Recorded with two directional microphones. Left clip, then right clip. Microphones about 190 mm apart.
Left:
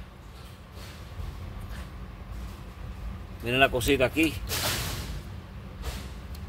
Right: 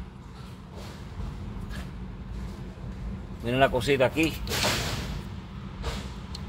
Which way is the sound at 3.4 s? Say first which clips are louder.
Even; 15° left (ahead or behind).